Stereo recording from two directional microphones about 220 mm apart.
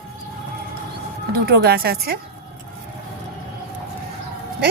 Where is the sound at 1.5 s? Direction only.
45° right (ahead or behind).